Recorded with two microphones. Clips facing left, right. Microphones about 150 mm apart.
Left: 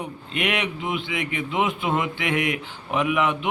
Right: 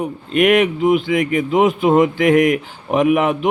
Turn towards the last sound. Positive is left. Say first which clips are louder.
# right 8 dB
turn(degrees=-45)  # may be behind; listen again after turning